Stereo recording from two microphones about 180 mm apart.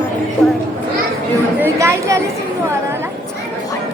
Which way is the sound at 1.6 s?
15° right (ahead or behind).